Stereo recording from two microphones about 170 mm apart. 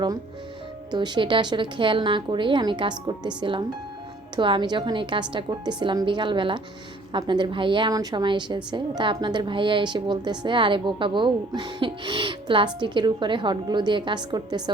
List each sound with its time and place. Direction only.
0.9 s a woman's voice: 25° right (ahead or behind)